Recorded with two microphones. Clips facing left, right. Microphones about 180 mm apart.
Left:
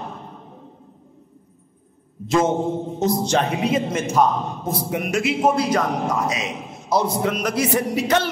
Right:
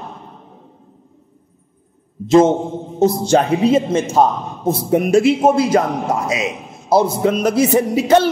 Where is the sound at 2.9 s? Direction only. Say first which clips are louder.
Right 8 dB; 30° right (ahead or behind).